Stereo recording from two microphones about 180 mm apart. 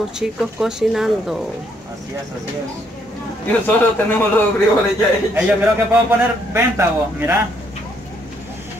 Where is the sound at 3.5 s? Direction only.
10° left (ahead or behind).